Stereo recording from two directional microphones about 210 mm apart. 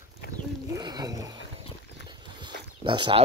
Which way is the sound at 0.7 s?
20° right (ahead or behind).